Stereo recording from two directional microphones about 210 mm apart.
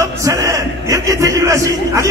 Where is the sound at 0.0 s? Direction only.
15° right (ahead or behind).